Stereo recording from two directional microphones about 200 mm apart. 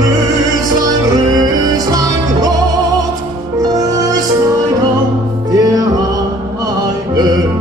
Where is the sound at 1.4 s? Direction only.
20° right (ahead or behind).